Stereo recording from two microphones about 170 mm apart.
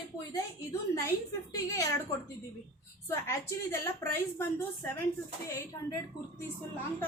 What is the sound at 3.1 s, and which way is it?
A woman's voice, 15° left (ahead or behind).